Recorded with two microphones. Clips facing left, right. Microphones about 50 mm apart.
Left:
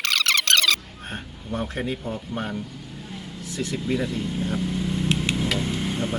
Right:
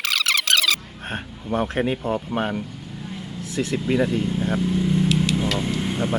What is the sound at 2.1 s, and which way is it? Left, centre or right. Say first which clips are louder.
Vehicle: right 5 dB; right.